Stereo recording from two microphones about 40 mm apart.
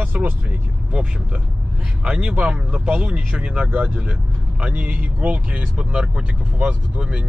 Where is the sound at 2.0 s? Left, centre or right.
Right.